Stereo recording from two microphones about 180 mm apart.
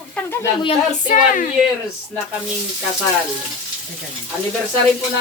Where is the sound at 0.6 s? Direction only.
45° left (ahead or behind).